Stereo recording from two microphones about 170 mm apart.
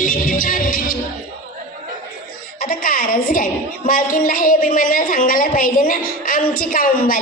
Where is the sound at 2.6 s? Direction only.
55° left (ahead or behind).